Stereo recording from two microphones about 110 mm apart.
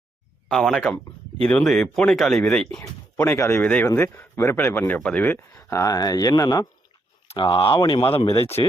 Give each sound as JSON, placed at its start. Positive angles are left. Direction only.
{"t": 0.4, "sound": "speech", "side_deg": 5}
{"t": 3.3, "sound": "speech", "side_deg": 25}
{"t": 3.6, "sound": "speech", "side_deg": 10}
{"t": 7.3, "sound": "speech", "side_deg": 50}